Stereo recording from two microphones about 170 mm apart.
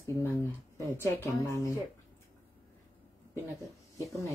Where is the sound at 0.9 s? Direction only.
15° left (ahead or behind).